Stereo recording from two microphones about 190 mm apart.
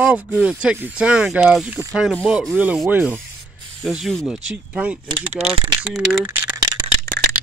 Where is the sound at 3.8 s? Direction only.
Centre (ahead or behind).